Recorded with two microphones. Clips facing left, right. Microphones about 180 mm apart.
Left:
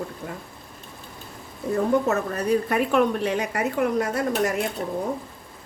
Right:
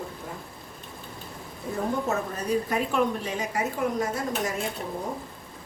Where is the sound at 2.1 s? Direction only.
65° left (ahead or behind).